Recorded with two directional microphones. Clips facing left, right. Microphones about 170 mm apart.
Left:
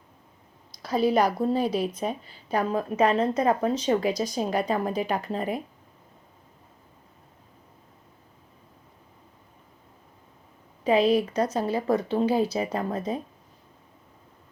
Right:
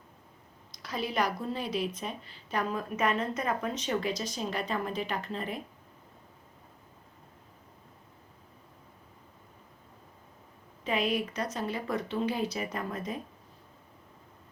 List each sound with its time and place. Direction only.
0.8 s speech: 35° left (ahead or behind)
10.8 s speech: 35° left (ahead or behind)